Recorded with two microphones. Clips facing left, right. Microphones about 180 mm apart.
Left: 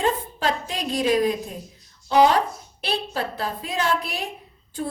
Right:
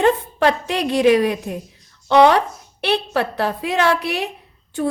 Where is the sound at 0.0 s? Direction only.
70° right (ahead or behind).